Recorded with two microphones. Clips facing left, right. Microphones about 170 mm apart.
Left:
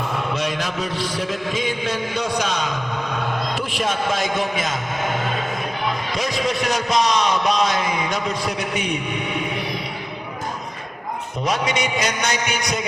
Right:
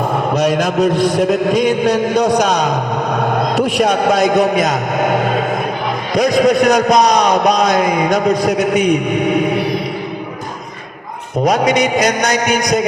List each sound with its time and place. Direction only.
0.0 s a man's voice: 50° right (ahead or behind)
5.1 s vehicle: 55° right (ahead or behind)
6.1 s a man's voice: 40° right (ahead or behind)
11.4 s a man's voice: 40° right (ahead or behind)